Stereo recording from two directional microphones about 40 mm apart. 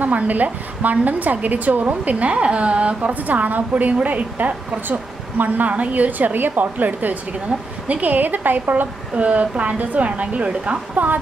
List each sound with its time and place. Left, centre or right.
0.0 s a woman's voice: right
5.7 s a woman's voice: right
9.1 s a woman's voice: right